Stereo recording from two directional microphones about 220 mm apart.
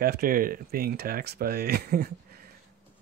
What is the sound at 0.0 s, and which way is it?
Speech, 40° right (ahead or behind).